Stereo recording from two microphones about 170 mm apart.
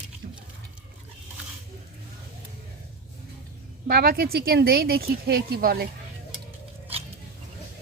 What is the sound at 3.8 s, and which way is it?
Speech, 60° right (ahead or behind).